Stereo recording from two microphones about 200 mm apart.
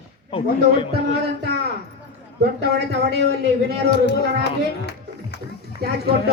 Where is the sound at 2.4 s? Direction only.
55° right (ahead or behind).